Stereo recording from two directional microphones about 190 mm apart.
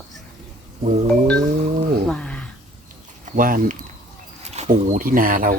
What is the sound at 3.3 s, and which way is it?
Speech, 45° right (ahead or behind).